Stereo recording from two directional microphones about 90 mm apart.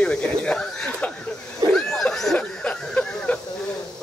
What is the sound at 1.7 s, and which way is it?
Snicker, 5° left (ahead or behind).